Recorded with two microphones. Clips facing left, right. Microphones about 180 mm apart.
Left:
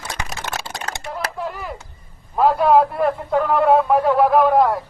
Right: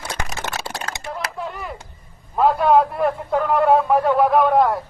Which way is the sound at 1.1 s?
Centre (ahead or behind).